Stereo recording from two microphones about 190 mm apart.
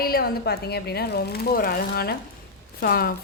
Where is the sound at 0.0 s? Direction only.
55° left (ahead or behind).